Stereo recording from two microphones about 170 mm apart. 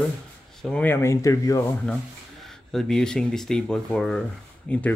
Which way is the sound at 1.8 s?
5° left (ahead or behind).